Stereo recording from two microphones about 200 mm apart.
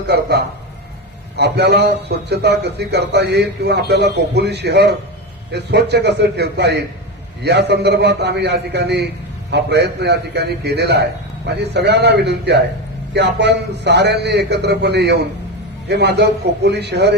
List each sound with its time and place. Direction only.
0.1 s a man's voice: 55° right (ahead or behind)